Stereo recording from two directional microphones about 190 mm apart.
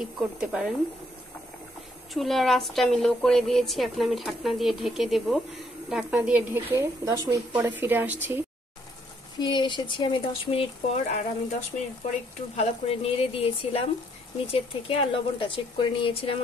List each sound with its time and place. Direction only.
0.0 s a woman's voice: 5° right (ahead or behind)
2.1 s a woman's voice: centre (ahead or behind)
9.4 s speech: 25° left (ahead or behind)
12.5 s speech: 30° left (ahead or behind)